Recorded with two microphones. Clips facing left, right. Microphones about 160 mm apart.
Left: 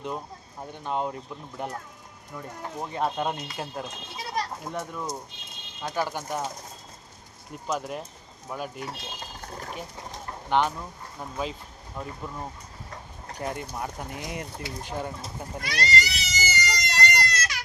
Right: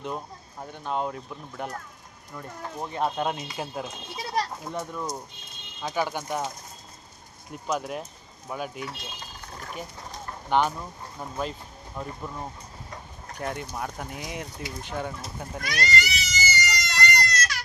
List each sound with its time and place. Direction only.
0.6 s speech: 5° left (ahead or behind)
7.5 s speech: centre (ahead or behind)
8.8 s speech: 45° left (ahead or behind)
10.5 s speech: 5° right (ahead or behind)
15.6 s a sound: 30° left (ahead or behind)